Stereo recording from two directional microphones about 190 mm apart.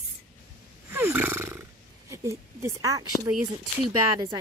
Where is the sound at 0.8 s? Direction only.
10° right (ahead or behind).